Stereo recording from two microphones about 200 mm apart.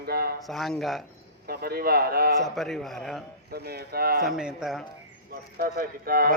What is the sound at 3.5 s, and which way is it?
Speech, 50° right (ahead or behind).